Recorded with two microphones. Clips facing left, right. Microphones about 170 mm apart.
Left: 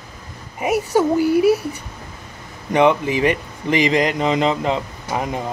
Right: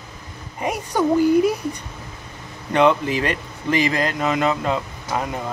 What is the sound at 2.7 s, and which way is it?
Speech, 15° left (ahead or behind).